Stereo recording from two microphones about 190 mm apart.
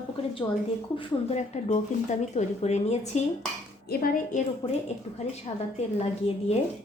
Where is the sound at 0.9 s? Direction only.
35° left (ahead or behind).